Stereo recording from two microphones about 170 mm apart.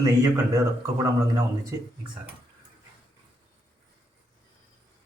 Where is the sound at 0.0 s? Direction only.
20° right (ahead or behind).